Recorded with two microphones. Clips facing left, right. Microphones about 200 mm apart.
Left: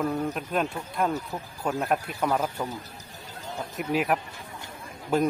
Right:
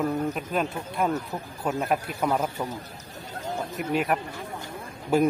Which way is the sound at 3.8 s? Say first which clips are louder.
Left 1 dB; centre (ahead or behind).